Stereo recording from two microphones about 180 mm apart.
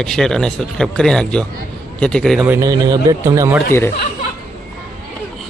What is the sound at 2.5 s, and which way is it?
A man's voice, 20° right (ahead or behind).